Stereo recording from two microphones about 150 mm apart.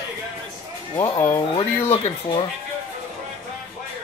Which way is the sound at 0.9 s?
20° left (ahead or behind).